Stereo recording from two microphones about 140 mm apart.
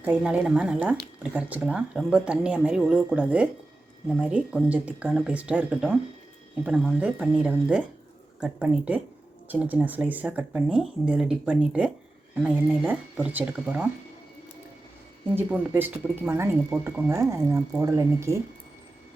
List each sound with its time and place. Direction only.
0.0 s speech: 10° right (ahead or behind)
7.0 s speech: 5° right (ahead or behind)
15.4 s speech: 10° right (ahead or behind)